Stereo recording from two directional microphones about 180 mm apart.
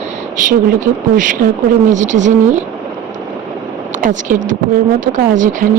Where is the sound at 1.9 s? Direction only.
45° right (ahead or behind).